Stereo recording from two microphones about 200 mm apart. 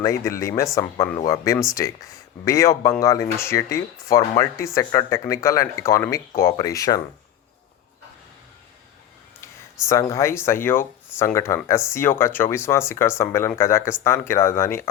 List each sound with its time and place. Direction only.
0.0 s speech: 15° left (ahead or behind)
9.8 s speech: 15° left (ahead or behind)